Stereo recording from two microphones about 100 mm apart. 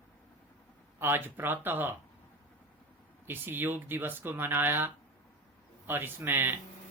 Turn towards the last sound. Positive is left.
turn(degrees=-20)  # may be behind; listen again after turning